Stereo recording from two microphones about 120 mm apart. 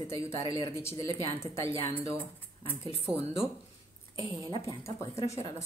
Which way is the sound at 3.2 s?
55° left (ahead or behind).